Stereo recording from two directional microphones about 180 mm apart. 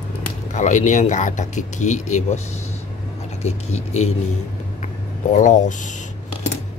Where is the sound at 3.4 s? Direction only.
40° left (ahead or behind).